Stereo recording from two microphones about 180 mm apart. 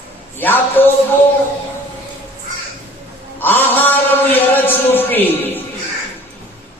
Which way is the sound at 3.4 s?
10° left (ahead or behind).